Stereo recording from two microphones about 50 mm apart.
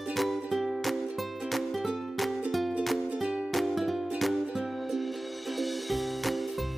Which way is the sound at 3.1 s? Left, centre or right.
Centre.